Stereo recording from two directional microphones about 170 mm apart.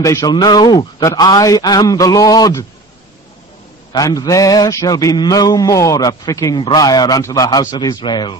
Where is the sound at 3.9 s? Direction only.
20° left (ahead or behind).